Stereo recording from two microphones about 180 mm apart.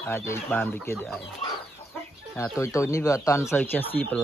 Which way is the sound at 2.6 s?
15° left (ahead or behind).